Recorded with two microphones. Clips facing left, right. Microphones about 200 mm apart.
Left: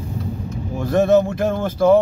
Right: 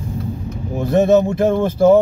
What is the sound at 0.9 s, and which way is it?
Speech, 15° right (ahead or behind).